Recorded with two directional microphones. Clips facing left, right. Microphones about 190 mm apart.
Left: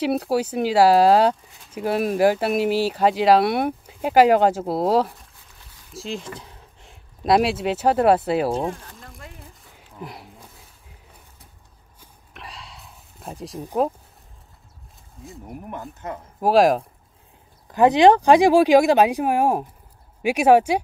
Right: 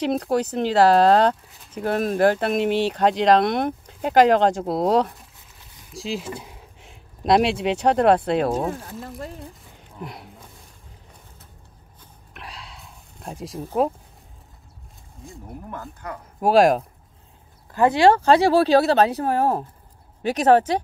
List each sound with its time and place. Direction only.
0.0 s speech: 5° left (ahead or behind); by 6.9 s 10° right (ahead or behind)
6.9 s speech: centre (ahead or behind)
9.2 s speech: 35° right (ahead or behind)
9.9 s a sound: centre (ahead or behind)
12.4 s a sound: centre (ahead or behind)
15.5 s speech: 20° left (ahead or behind)
16.3 s speech: centre (ahead or behind)
17.6 s speech: 20° left (ahead or behind)